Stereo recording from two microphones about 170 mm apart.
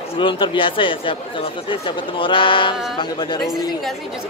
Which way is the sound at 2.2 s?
30° left (ahead or behind).